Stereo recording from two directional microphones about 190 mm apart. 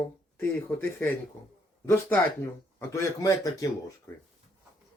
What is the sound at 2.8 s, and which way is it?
Speech, 15° left (ahead or behind).